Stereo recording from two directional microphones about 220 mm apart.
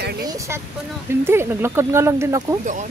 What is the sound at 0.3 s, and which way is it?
Vehicle, 15° right (ahead or behind).